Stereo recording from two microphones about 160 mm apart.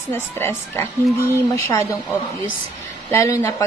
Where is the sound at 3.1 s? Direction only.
15° left (ahead or behind).